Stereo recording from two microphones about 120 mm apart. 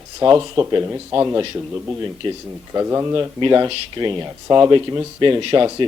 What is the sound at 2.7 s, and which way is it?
Speech, 25° right (ahead or behind).